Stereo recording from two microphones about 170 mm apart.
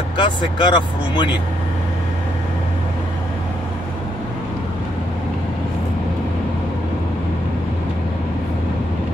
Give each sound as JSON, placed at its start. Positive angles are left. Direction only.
{"t": 0.2, "sound": "speech", "side_deg": 25}